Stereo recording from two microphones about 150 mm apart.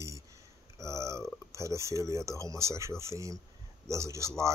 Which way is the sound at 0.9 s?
20° right (ahead or behind).